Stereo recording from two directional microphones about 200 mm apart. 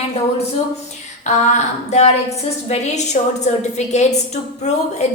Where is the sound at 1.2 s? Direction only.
35° left (ahead or behind).